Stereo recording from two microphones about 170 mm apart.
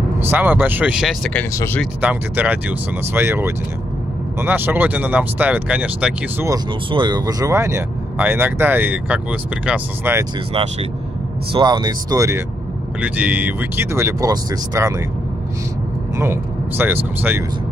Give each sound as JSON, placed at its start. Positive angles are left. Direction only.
{"t": 0.3, "sound": "speech", "side_deg": -10}
{"t": 1.5, "sound": "speech", "side_deg": 20}
{"t": 2.0, "sound": "speech", "side_deg": -10}
{"t": 6.5, "sound": "speech", "side_deg": -25}
{"t": 10.5, "sound": "speech", "side_deg": -35}
{"t": 11.5, "sound": "speech", "side_deg": -25}
{"t": 16.2, "sound": "speech", "side_deg": -15}